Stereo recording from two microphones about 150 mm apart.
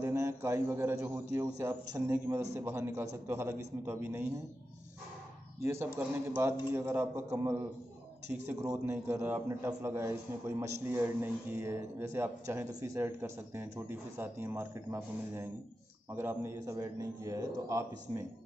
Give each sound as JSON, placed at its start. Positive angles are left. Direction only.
{"t": 0.0, "sound": "a man's voice", "side_deg": -20}
{"t": 5.6, "sound": "a man's voice", "side_deg": -15}
{"t": 8.7, "sound": "a man's voice", "side_deg": -15}